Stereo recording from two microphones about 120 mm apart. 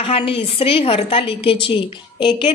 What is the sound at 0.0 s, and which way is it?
A woman's voice, 50° left (ahead or behind).